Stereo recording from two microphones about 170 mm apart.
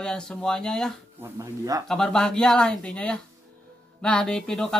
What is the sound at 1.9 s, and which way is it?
Speech, 5° left (ahead or behind).